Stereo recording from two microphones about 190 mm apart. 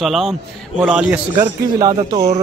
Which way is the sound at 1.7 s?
20° right (ahead or behind).